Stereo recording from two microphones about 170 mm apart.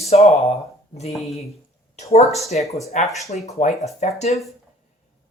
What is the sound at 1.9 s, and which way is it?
Speech, 40° left (ahead or behind).